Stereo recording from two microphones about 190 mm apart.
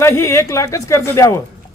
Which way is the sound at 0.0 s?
15° left (ahead or behind).